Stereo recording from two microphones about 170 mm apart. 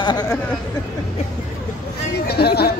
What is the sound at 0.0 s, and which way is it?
Speech, 25° left (ahead or behind).